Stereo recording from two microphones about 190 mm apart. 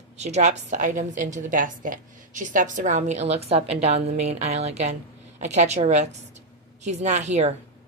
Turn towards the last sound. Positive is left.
turn(degrees=-35)  # may be behind; listen again after turning